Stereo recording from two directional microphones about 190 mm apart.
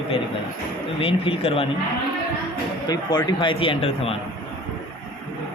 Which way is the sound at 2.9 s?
20° left (ahead or behind).